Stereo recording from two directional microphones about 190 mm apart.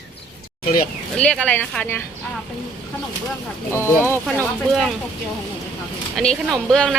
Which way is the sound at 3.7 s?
15° left (ahead or behind).